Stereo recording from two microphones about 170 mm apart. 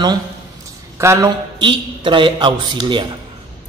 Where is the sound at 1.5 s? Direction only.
30° right (ahead or behind).